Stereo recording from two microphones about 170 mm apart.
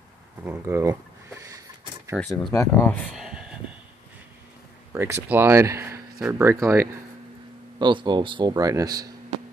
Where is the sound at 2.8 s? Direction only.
5° left (ahead or behind).